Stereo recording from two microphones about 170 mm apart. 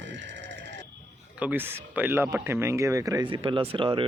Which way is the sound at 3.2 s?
30° right (ahead or behind).